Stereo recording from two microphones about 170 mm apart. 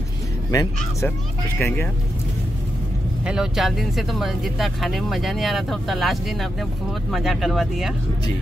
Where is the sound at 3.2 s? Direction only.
5° right (ahead or behind).